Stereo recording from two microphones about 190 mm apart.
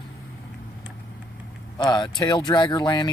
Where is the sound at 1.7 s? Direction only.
25° left (ahead or behind).